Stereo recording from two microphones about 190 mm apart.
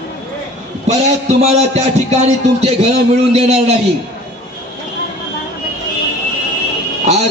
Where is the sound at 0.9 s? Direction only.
35° right (ahead or behind).